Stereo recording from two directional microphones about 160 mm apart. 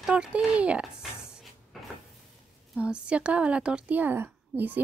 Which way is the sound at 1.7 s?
Centre (ahead or behind).